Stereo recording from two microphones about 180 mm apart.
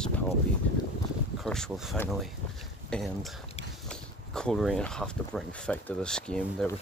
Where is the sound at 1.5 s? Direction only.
5° left (ahead or behind).